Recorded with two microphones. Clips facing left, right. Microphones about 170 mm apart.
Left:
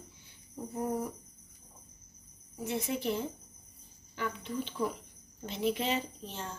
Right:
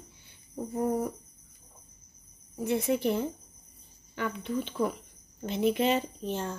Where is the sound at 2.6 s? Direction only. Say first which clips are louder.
Right 6 dB; 55° right (ahead or behind).